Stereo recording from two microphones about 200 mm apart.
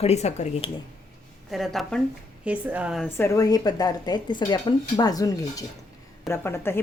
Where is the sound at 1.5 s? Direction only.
Centre (ahead or behind).